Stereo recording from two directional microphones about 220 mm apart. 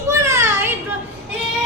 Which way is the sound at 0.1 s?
10° right (ahead or behind).